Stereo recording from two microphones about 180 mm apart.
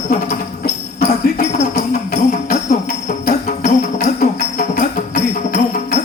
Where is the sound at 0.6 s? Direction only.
55° left (ahead or behind).